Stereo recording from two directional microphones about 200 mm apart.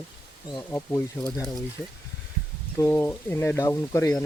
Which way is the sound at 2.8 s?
10° left (ahead or behind).